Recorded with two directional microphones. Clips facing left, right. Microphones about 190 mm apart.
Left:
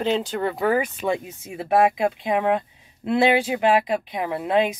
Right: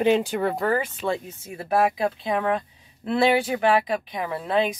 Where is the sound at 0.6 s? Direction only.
15° left (ahead or behind).